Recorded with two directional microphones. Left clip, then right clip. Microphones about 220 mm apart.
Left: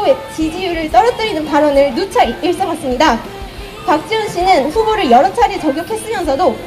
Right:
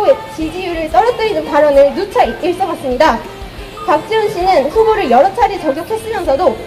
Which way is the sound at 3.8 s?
30° left (ahead or behind).